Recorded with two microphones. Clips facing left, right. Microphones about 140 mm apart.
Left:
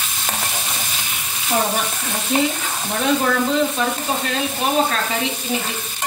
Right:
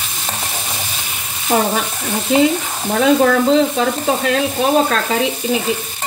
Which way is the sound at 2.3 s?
90° right.